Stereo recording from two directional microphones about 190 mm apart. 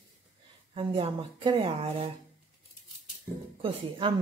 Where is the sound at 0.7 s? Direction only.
25° right (ahead or behind).